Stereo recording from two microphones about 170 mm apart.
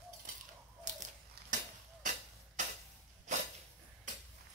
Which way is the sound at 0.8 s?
45° right (ahead or behind).